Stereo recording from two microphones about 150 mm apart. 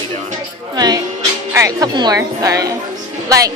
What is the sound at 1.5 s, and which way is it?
A woman's voice, 25° right (ahead or behind).